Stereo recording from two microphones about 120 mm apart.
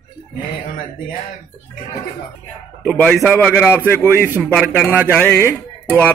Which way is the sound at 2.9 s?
5° left (ahead or behind).